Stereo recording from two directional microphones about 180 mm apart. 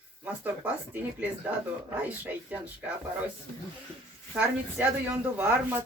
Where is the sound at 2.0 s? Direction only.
10° right (ahead or behind).